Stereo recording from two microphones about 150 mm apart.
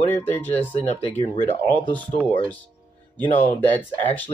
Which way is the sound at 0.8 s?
45° left (ahead or behind).